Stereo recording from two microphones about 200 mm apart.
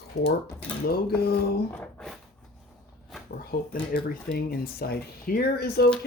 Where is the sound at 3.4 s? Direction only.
50° left (ahead or behind).